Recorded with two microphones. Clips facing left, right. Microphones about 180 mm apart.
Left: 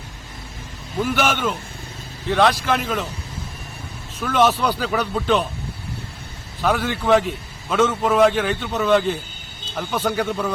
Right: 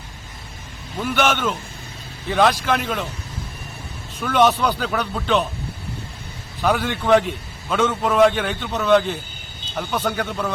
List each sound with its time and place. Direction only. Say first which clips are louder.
1.0 s a man's voice: right 1 dB; 5° left (ahead or behind)
4.2 s a man's voice: right 1 dB; centre (ahead or behind)
6.6 s a man's voice: even; centre (ahead or behind)